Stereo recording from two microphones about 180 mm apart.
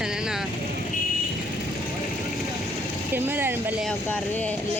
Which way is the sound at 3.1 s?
10° right (ahead or behind).